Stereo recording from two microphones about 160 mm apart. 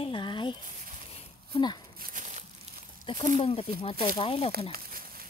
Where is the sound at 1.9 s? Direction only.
60° right (ahead or behind).